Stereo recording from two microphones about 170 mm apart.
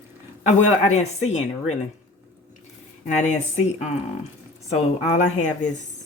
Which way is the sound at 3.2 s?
45° left (ahead or behind).